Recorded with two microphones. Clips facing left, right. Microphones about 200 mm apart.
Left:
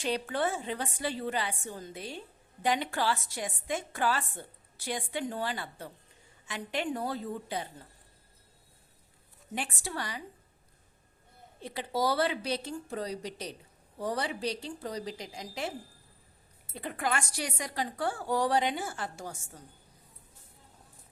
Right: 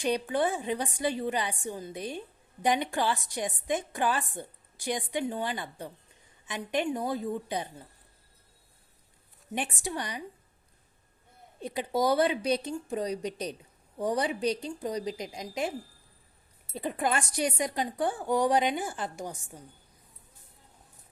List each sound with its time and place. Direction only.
0.0 s a woman's voice: 15° right (ahead or behind)
9.6 s a woman's voice: 15° right (ahead or behind)
11.6 s a woman's voice: 15° right (ahead or behind)